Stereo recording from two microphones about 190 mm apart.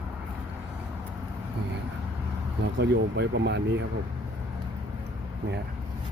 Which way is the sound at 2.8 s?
65° right (ahead or behind).